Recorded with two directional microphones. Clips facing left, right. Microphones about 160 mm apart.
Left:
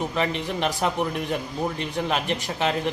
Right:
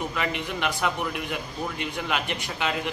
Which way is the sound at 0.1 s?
35° left (ahead or behind).